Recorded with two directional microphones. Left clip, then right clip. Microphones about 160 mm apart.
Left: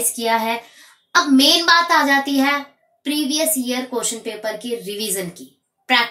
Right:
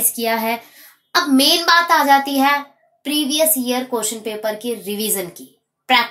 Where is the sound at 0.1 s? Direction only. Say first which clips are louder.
Even; 20° right (ahead or behind).